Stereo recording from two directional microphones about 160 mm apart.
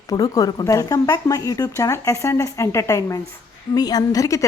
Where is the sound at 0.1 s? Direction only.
25° left (ahead or behind).